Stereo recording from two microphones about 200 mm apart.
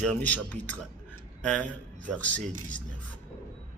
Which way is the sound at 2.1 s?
5° left (ahead or behind).